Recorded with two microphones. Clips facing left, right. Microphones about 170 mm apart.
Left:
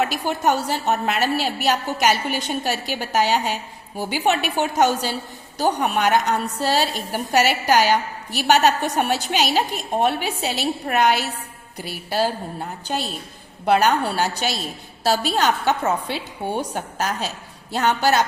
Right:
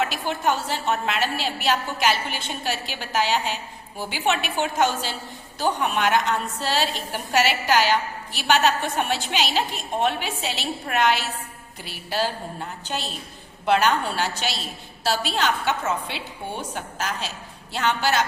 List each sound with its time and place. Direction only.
0.0 s a woman's voice: 45° left (ahead or behind)
13.7 s a woman's voice: 40° left (ahead or behind)